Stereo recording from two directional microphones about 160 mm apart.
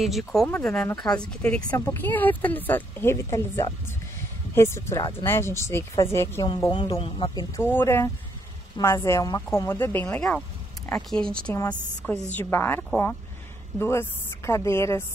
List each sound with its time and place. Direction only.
0.0 s speech: centre (ahead or behind); by 6.4 s 15° left (ahead or behind)
6.4 s speech: 25° left (ahead or behind)
7.5 s speech: 15° left (ahead or behind)